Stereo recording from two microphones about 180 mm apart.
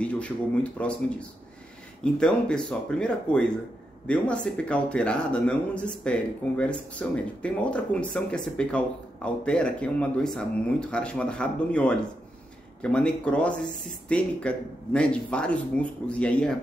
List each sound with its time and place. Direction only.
0.0 s a sound: 5° left (ahead or behind)
0.8 s speech: 10° left (ahead or behind)
2.1 s speech: 5° left (ahead or behind)